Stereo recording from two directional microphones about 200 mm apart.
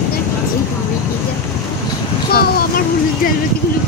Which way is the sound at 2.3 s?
50° left (ahead or behind).